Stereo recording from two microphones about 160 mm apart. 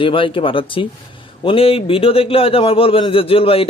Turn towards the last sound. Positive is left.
turn(degrees=35)  # may be behind; listen again after turning